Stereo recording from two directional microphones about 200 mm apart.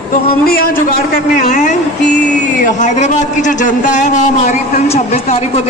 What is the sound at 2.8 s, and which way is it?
A man's voice, 35° left (ahead or behind).